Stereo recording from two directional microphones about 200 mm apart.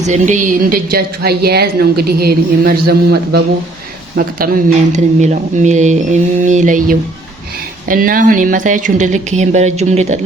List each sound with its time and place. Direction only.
0.0 s a woman's voice: 35° right (ahead or behind)